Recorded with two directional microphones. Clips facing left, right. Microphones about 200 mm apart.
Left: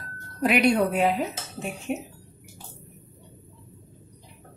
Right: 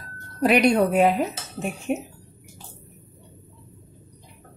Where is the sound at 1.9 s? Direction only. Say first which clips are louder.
Right 4 dB; 50° right (ahead or behind).